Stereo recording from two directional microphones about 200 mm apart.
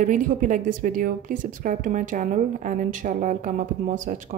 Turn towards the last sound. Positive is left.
turn(degrees=-40)  # may be behind; listen again after turning